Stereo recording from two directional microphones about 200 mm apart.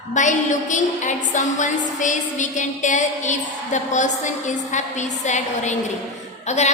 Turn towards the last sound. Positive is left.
turn(degrees=35)  # may be behind; listen again after turning